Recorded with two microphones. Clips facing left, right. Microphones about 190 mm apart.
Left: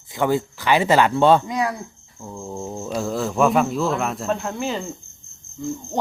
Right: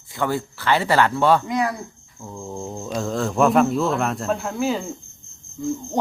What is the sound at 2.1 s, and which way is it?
Speech, 5° left (ahead or behind).